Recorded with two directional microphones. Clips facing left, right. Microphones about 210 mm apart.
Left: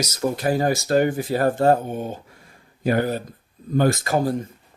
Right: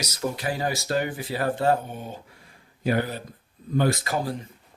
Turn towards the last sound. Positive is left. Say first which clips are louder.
# left 5 dB
turn(degrees=45)  # may be behind; listen again after turning